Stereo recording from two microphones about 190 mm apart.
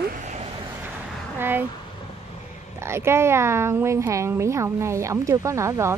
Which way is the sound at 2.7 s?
15° right (ahead or behind).